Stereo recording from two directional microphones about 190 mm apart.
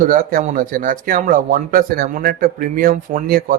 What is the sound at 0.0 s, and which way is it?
Speech, 45° right (ahead or behind).